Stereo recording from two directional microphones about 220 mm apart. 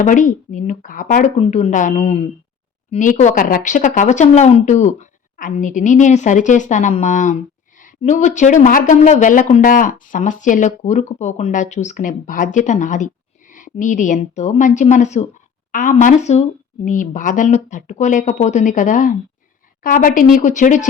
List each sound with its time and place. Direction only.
0.0 s speech: 35° left (ahead or behind)